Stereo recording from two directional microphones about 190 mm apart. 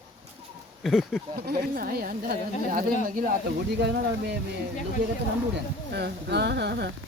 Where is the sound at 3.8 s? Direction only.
60° right (ahead or behind).